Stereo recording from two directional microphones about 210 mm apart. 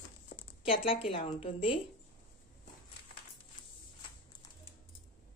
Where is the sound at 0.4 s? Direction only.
25° left (ahead or behind).